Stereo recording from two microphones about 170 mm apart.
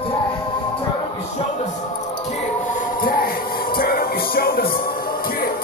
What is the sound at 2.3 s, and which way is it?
Music, 45° left (ahead or behind).